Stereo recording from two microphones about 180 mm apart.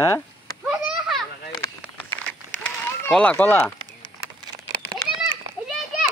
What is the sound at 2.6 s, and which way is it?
Run, 5° left (ahead or behind).